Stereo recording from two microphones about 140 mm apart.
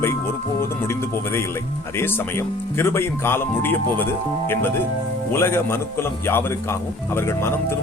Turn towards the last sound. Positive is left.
turn(degrees=15)  # may be behind; listen again after turning